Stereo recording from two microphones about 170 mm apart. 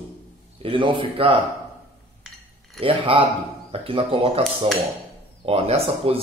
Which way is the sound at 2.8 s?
30° right (ahead or behind).